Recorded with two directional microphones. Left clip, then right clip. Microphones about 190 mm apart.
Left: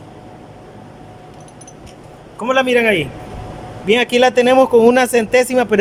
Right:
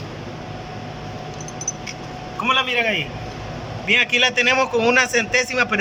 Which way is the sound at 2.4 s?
50° left (ahead or behind).